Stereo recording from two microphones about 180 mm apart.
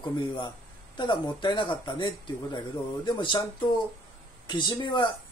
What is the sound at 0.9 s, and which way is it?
Speech, 25° left (ahead or behind).